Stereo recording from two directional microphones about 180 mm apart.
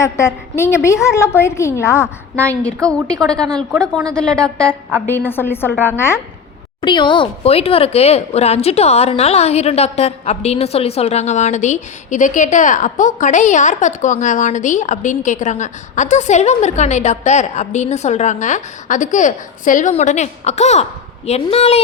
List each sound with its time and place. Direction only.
0.0 s a woman's voice: 15° left (ahead or behind)
4.7 s a woman's voice: 10° right (ahead or behind)
5.0 s a woman's voice: 10° left (ahead or behind)
6.8 s speech: 25° left (ahead or behind)